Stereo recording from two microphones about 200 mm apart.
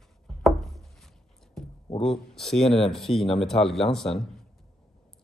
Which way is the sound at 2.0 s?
Centre (ahead or behind).